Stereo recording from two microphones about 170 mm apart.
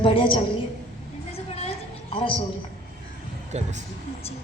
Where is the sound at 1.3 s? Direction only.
35° left (ahead or behind).